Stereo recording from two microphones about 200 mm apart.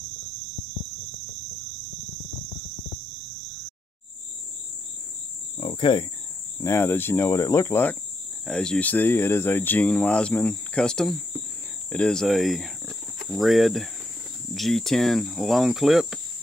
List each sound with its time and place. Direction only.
5.6 s cricket: 25° left (ahead or behind)
6.6 s speech: 15° left (ahead or behind)
11.9 s cricket: 5° left (ahead or behind)